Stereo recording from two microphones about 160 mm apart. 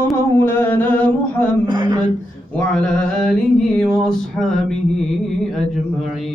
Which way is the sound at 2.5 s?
5° left (ahead or behind).